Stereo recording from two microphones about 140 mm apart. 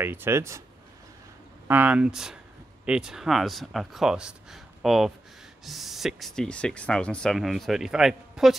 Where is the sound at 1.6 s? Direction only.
10° right (ahead or behind).